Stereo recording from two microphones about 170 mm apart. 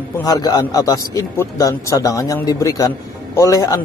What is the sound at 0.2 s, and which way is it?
A man's voice, 20° left (ahead or behind).